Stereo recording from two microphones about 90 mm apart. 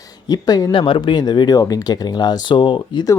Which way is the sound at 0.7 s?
70° left (ahead or behind).